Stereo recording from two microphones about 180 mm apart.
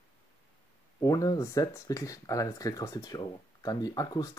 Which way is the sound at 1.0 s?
20° left (ahead or behind).